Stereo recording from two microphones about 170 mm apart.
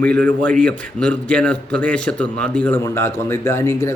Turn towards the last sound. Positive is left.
turn(degrees=15)  # may be behind; listen again after turning